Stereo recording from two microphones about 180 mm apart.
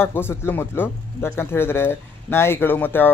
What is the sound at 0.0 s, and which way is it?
Speech, 15° left (ahead or behind).